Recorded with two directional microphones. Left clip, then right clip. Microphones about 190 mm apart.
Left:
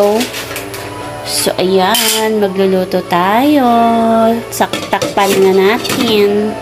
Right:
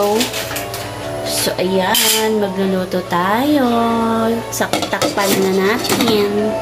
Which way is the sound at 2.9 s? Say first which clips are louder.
Left 5 dB; 20° left (ahead or behind).